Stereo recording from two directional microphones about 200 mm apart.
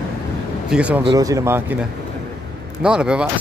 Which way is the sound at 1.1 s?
15° right (ahead or behind).